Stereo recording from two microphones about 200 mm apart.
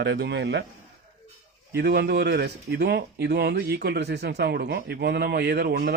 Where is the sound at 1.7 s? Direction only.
55° right (ahead or behind).